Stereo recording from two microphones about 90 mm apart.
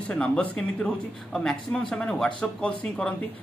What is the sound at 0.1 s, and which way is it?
Speech, 15° left (ahead or behind).